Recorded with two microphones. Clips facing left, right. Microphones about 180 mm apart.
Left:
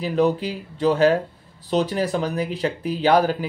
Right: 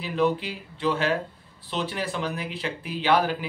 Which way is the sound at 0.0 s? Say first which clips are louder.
Left 4 dB; 40° left (ahead or behind).